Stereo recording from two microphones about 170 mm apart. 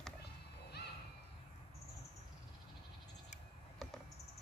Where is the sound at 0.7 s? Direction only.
75° left (ahead or behind).